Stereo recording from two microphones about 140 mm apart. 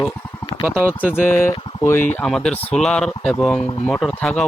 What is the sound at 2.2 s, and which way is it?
Speech, 5° left (ahead or behind).